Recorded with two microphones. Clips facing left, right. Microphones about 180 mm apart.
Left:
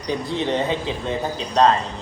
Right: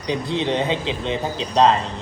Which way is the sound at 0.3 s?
15° right (ahead or behind).